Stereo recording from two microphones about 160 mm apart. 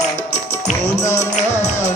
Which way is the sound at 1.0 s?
20° left (ahead or behind).